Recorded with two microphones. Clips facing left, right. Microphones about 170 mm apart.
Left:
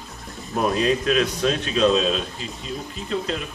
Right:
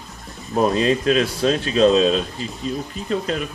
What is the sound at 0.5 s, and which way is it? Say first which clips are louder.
Speech: right 3 dB; 35° right (ahead or behind).